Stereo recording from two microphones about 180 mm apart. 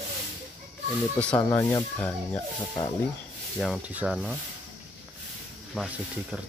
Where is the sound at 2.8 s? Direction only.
20° left (ahead or behind).